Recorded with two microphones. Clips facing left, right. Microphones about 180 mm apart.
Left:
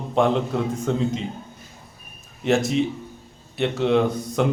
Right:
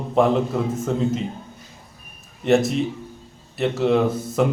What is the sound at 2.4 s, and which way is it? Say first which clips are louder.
A man's voice: right 2 dB; centre (ahead or behind).